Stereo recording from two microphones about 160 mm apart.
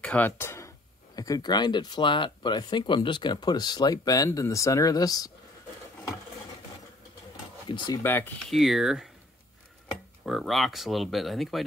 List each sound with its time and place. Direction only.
0.0 s speech: 10° left (ahead or behind)
7.6 s speech: 30° left (ahead or behind)
8.0 s speech: 15° left (ahead or behind)
8.5 s speech: centre (ahead or behind)
10.2 s speech: centre (ahead or behind)